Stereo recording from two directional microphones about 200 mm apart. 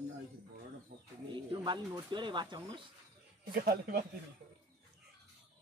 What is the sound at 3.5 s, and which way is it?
Speech, 50° right (ahead or behind).